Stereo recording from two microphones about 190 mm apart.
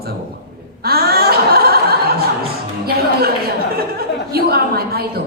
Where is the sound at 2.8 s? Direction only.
55° right (ahead or behind).